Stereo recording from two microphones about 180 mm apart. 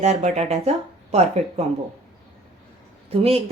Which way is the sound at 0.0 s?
40° right (ahead or behind).